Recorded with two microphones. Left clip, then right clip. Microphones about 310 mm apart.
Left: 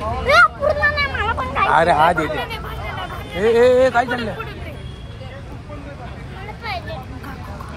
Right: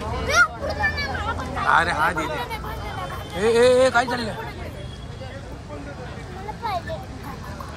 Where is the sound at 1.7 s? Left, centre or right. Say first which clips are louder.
Left 5 dB; centre.